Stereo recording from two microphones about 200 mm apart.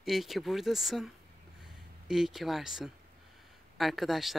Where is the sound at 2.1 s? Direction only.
Centre (ahead or behind).